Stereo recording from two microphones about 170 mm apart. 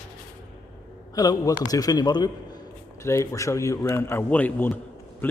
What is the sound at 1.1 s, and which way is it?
A man's voice, 20° left (ahead or behind).